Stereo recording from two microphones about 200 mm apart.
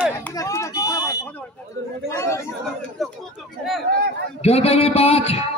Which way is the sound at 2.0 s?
15° left (ahead or behind).